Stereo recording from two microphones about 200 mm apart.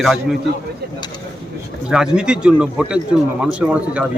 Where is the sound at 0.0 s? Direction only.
Centre (ahead or behind).